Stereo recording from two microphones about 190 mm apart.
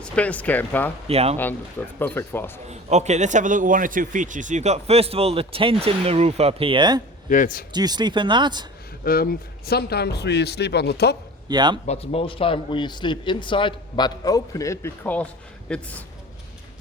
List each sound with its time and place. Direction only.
0.0 s speech: 5° left (ahead or behind)
1.0 s a man's voice: 30° right (ahead or behind)
1.4 s speech: 10° left (ahead or behind)
2.6 s a man's voice: 35° right (ahead or behind)
7.3 s a man's voice: 45° left (ahead or behind)
7.7 s speech: 20° right (ahead or behind)
9.0 s speech: 50° left (ahead or behind)
11.4 s speech: 20° right (ahead or behind)
11.9 s a man's voice: 30° left (ahead or behind); by 16.0 s 10° left (ahead or behind)